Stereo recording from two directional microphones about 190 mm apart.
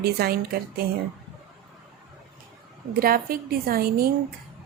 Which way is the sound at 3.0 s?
50° right (ahead or behind).